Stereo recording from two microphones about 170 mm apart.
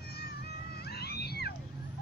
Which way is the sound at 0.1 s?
70° left (ahead or behind).